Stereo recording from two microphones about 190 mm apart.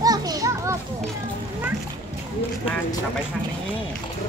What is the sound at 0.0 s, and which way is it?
Children playing, 20° right (ahead or behind).